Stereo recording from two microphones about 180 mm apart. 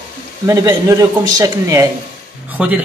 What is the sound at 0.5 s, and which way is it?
Speech, 20° right (ahead or behind).